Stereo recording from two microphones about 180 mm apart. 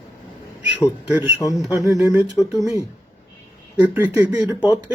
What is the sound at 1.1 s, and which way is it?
Speech, 15° right (ahead or behind).